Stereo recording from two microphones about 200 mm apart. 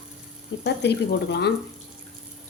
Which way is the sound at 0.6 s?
60° left (ahead or behind).